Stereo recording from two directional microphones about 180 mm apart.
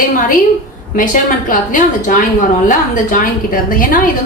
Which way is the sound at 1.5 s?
50° left (ahead or behind).